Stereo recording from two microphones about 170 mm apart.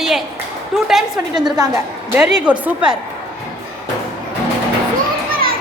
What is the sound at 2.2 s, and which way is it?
Speech, 5° right (ahead or behind).